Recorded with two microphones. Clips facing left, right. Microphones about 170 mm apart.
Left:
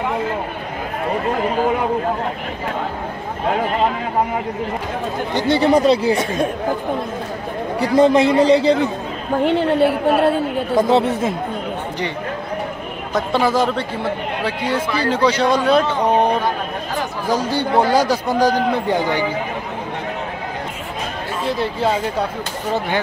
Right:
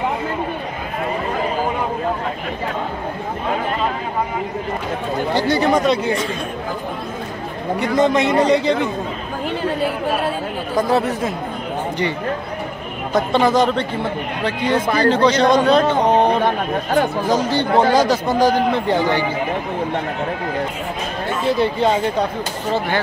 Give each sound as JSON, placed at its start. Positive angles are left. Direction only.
{"t": 5.3, "sound": "a man's voice", "side_deg": 30}
{"t": 7.8, "sound": "a man's voice", "side_deg": 35}
{"t": 9.4, "sound": "a woman's voice", "side_deg": 65}
{"t": 10.7, "sound": "speech", "side_deg": 25}
{"t": 13.1, "sound": "speech", "side_deg": 5}
{"t": 14.7, "sound": "speech", "side_deg": -50}
{"t": 15.0, "sound": "speech", "side_deg": 10}
{"t": 17.3, "sound": "speech", "side_deg": 10}
{"t": 21.5, "sound": "speech", "side_deg": 0}